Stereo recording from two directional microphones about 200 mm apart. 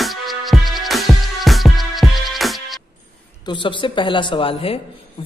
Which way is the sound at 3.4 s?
25° left (ahead or behind).